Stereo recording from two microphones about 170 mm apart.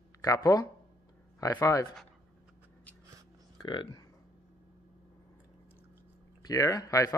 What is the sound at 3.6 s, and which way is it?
Speech, 30° left (ahead or behind).